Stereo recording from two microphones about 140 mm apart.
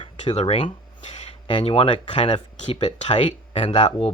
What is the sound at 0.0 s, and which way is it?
Speech, 45° left (ahead or behind).